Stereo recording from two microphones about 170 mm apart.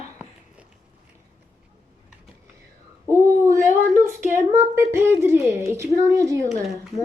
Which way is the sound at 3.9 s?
15° right (ahead or behind).